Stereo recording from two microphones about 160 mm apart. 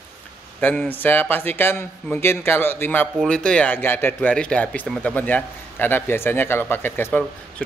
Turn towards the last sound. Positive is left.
turn(degrees=15)  # may be behind; listen again after turning